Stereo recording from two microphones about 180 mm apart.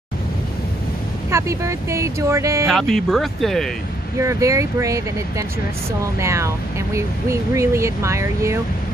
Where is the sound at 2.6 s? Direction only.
Centre (ahead or behind).